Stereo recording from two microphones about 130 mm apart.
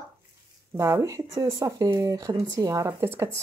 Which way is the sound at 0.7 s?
20° right (ahead or behind).